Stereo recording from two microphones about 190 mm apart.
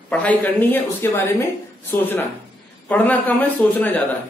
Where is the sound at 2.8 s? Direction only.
10° left (ahead or behind).